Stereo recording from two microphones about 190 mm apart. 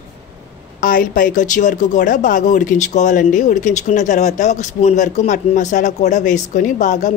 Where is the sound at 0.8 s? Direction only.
45° left (ahead or behind).